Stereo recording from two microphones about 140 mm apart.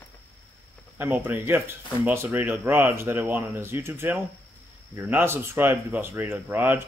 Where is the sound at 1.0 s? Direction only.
15° right (ahead or behind).